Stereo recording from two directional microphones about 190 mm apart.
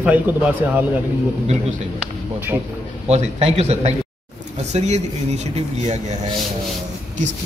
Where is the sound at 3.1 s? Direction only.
35° right (ahead or behind).